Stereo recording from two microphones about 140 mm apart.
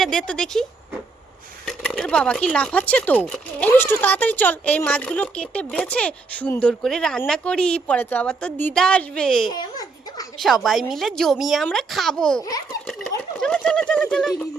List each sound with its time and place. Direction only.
0.0 s speech: 5° left (ahead or behind)
1.6 s speech: 5° left (ahead or behind)
9.5 s babbling: 30° left (ahead or behind)
10.3 s a woman's voice: centre (ahead or behind)